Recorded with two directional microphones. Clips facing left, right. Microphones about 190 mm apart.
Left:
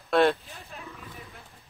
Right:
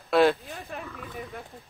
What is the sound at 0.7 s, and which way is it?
Wild animals, 60° right (ahead or behind).